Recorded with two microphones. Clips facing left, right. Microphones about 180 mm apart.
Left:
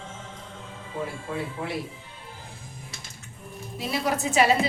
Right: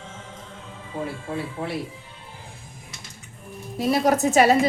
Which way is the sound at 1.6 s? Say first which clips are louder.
Right 2 dB; 30° right (ahead or behind).